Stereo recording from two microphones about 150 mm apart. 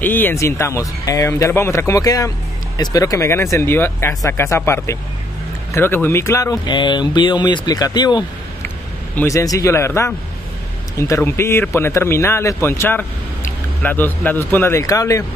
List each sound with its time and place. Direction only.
0.0 s speech: 10° left (ahead or behind); by 8.3 s 30° left (ahead or behind)
8.6 s a man's voice: 15° left (ahead or behind)